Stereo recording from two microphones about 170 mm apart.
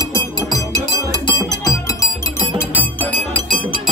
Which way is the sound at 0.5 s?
20° left (ahead or behind).